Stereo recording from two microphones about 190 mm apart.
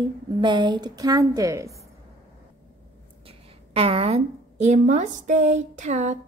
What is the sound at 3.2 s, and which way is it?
A woman's voice, 30° right (ahead or behind).